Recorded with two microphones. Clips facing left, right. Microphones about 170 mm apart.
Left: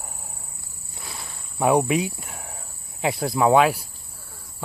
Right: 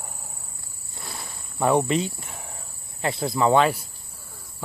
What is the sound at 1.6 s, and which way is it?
Cricket, 10° left (ahead or behind).